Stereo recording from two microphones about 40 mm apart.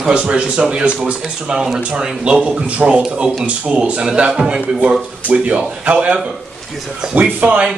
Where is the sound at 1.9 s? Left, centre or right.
Right.